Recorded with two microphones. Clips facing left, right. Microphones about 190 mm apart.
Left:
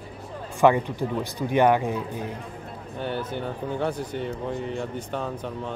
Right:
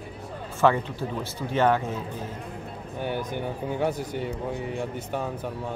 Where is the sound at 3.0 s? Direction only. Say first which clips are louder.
Even; 10° right (ahead or behind).